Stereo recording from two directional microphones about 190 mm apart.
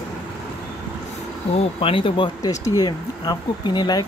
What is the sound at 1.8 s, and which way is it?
Speech, 30° left (ahead or behind).